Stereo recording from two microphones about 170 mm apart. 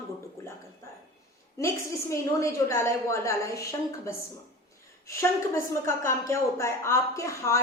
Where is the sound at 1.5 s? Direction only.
15° left (ahead or behind).